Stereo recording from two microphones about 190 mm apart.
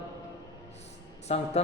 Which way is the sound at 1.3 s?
35° left (ahead or behind).